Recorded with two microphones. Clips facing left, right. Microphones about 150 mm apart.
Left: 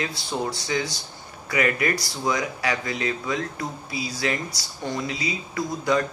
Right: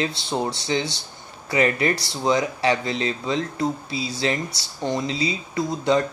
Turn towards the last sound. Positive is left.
turn(degrees=-25)  # may be behind; listen again after turning